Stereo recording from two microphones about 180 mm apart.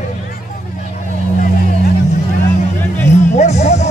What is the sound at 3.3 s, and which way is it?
Music, 40° left (ahead or behind).